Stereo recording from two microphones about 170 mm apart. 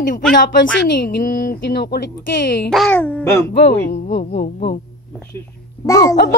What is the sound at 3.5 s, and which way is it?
Speech, 70° left (ahead or behind).